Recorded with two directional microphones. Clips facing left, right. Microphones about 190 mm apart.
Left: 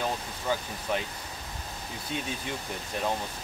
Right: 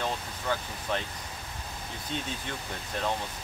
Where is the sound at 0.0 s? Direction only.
10° left (ahead or behind).